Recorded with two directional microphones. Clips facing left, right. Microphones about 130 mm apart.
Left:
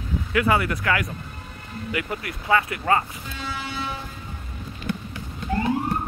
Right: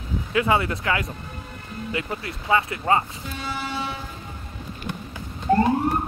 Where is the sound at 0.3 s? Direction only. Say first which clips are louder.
Even; 25° right (ahead or behind).